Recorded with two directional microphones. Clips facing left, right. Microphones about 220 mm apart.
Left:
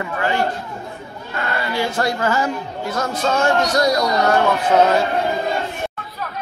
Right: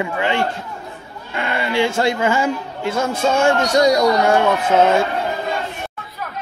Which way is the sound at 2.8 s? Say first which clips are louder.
Right 3 dB; 25° right (ahead or behind).